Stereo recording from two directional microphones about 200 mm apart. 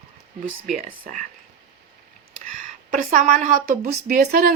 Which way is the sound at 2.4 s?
40° right (ahead or behind).